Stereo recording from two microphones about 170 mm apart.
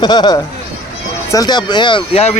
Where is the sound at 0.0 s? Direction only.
25° left (ahead or behind).